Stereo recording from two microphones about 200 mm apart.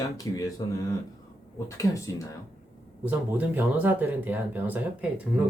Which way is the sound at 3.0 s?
10° right (ahead or behind).